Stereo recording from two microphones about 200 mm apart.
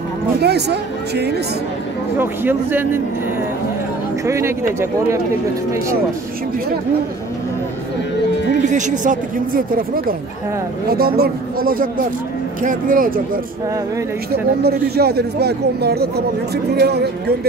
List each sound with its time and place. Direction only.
0.4 s speech: 55° right (ahead or behind)
2.1 s speech: 10° right (ahead or behind)
4.3 s speech: 15° right (ahead or behind)
8.6 s speech: 40° right (ahead or behind)
14.6 s speech: 50° right (ahead or behind)